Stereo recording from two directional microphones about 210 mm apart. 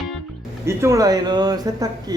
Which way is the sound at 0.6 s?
15° right (ahead or behind).